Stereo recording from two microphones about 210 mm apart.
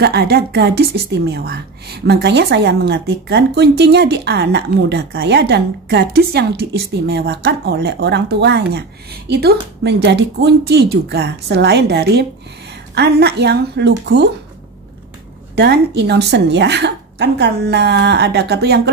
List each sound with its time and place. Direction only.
0.0 s a woman's voice: 50° right (ahead or behind)
15.5 s a woman's voice: 50° right (ahead or behind)